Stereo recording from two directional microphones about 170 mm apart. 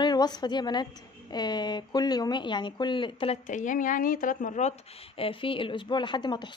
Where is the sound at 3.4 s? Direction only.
50° left (ahead or behind); by 6.5 s 25° left (ahead or behind).